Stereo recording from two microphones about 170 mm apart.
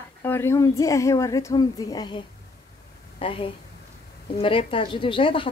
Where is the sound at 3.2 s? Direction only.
30° left (ahead or behind).